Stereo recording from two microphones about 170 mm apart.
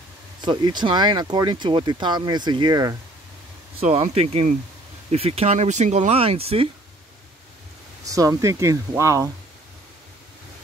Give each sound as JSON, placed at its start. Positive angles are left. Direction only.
{"t": 0.4, "sound": "speech", "side_deg": -25}
{"t": 3.8, "sound": "speech", "side_deg": -40}
{"t": 8.0, "sound": "speech", "side_deg": -20}